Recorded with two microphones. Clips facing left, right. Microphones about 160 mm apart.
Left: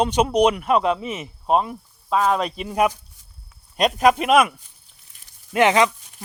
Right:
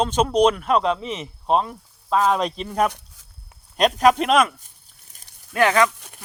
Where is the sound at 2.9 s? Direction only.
90° right.